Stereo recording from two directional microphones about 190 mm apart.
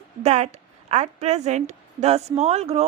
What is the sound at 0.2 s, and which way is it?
A woman's voice, 35° right (ahead or behind).